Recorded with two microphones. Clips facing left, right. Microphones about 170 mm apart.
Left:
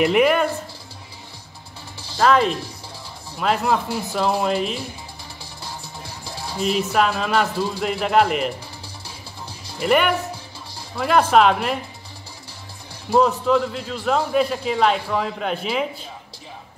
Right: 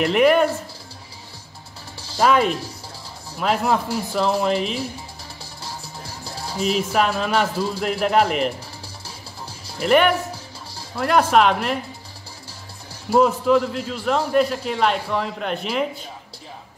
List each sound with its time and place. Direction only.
0.0 s a man's voice: 5° left (ahead or behind)
2.1 s a man's voice: 5° right (ahead or behind)
6.2 s a man's voice: centre (ahead or behind)
9.8 s a man's voice: centre (ahead or behind)
13.1 s a man's voice: 5° right (ahead or behind)